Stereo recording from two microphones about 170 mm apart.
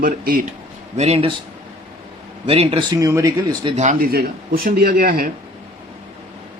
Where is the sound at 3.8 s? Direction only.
55° right (ahead or behind).